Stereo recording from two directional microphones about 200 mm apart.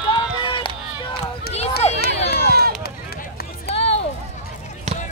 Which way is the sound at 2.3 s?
55° left (ahead or behind).